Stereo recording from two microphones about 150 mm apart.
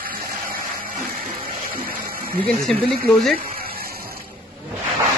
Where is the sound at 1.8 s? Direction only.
75° right (ahead or behind).